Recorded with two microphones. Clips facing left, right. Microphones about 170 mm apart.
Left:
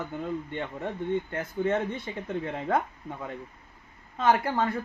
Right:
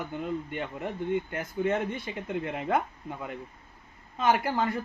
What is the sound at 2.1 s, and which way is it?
Speech, 15° right (ahead or behind).